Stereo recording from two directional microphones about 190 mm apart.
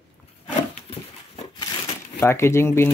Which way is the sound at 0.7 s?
30° left (ahead or behind).